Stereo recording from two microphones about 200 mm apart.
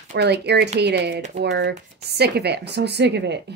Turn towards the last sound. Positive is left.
turn(degrees=-60)  # may be behind; listen again after turning